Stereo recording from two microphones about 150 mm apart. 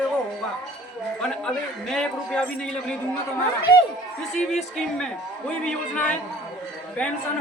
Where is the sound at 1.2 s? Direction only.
5° left (ahead or behind).